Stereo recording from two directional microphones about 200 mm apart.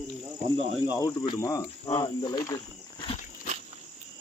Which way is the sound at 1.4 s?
20° left (ahead or behind).